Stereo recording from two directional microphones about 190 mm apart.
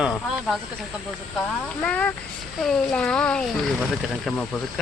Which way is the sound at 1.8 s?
5° left (ahead or behind).